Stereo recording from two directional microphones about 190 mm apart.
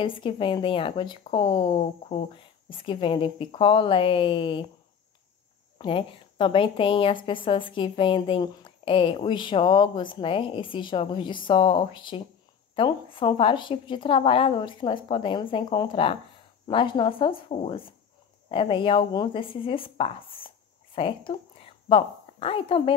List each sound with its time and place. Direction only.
0.0 s a woman's voice: 25° left (ahead or behind)
5.8 s a woman's voice: 25° left (ahead or behind)